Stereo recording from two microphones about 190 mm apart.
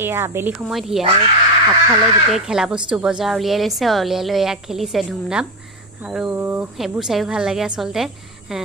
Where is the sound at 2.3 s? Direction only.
5° right (ahead or behind).